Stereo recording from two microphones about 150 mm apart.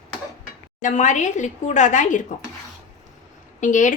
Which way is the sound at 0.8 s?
55° left (ahead or behind).